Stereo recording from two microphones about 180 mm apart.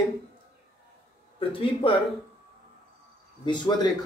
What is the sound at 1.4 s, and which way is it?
Speech, 30° left (ahead or behind).